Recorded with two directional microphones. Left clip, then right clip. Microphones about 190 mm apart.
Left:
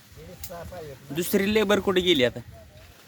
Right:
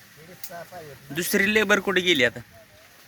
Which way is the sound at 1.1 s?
5° left (ahead or behind).